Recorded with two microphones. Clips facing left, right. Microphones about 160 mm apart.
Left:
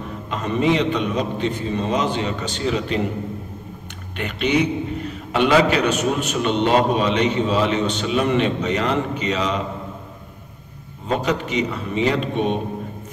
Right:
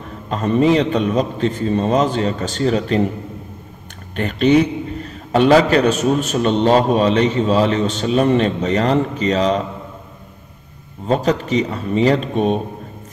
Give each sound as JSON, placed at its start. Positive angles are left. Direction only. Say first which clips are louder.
{"t": 0.3, "sound": "a man's voice", "louder": "right 5 dB", "side_deg": -40}
{"t": 4.2, "sound": "a man's voice", "louder": "right 6 dB", "side_deg": -40}
{"t": 11.1, "sound": "a man's voice", "louder": "right 5 dB", "side_deg": -35}